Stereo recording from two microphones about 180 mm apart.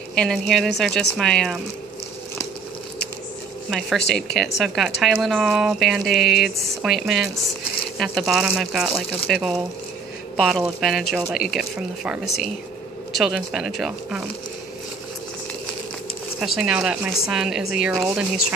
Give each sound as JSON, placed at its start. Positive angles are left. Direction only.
{"t": 0.1, "sound": "speech", "side_deg": 5}
{"t": 4.1, "sound": "speech", "side_deg": 5}
{"t": 16.3, "sound": "speech", "side_deg": 0}